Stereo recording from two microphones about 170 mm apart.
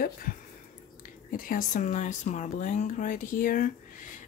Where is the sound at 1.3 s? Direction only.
55° left (ahead or behind).